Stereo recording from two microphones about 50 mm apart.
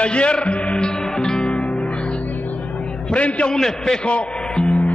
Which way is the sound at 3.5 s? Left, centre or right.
Centre.